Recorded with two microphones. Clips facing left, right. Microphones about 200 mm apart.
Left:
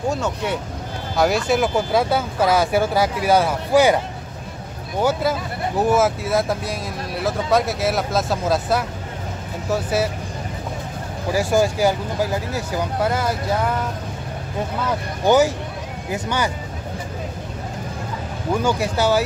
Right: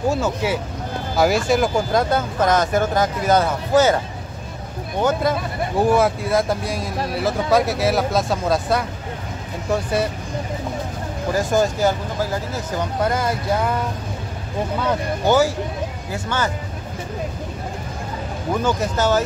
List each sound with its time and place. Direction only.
0.1 s speech: 5° right (ahead or behind); by 4.0 s 15° left (ahead or behind)
5.8 s speech: centre (ahead or behind)
11.3 s speech: 10° left (ahead or behind)
15.2 s speech: 15° left (ahead or behind)
18.6 s speech: 10° left (ahead or behind)